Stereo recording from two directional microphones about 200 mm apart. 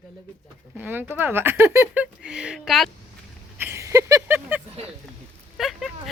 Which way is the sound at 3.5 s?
10° right (ahead or behind).